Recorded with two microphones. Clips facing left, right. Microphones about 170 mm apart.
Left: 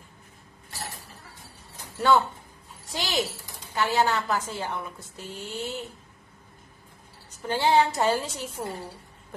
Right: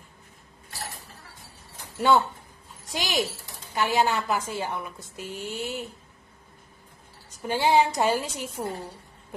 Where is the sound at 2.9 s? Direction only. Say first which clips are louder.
Right 1 dB; 15° right (ahead or behind).